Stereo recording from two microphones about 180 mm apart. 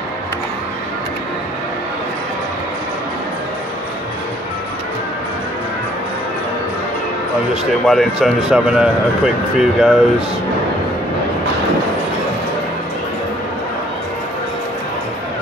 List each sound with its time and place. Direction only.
7.8 s speech: centre (ahead or behind)